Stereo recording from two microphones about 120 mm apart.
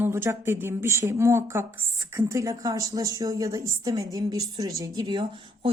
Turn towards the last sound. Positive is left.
turn(degrees=-40)  # may be behind; listen again after turning